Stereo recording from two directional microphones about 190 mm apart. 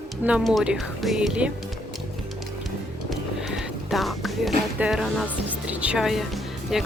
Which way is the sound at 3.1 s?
Centre (ahead or behind).